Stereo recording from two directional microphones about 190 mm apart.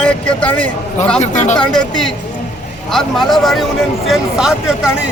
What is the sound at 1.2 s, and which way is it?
Speech, 40° left (ahead or behind).